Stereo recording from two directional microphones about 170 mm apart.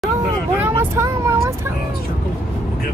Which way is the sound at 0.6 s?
15° right (ahead or behind).